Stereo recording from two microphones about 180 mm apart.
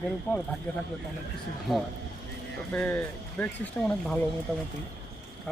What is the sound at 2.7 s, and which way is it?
Speech, 10° left (ahead or behind).